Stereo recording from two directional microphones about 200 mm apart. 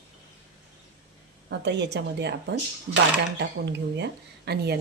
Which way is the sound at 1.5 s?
60° right (ahead or behind).